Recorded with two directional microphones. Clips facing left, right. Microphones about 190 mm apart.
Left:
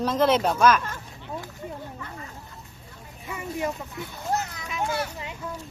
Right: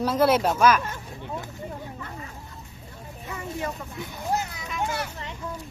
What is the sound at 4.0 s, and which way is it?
Speech, 15° right (ahead or behind).